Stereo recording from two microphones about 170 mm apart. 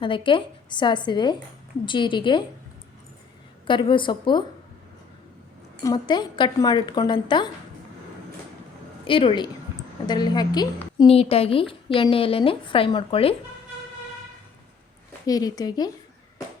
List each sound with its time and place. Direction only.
0.0 s a woman's voice: 30° left (ahead or behind)
3.7 s a woman's voice: 30° left (ahead or behind)
5.8 s a woman's voice: 25° left (ahead or behind)
9.0 s a woman's voice: 30° left (ahead or behind)
15.3 s a woman's voice: 20° left (ahead or behind)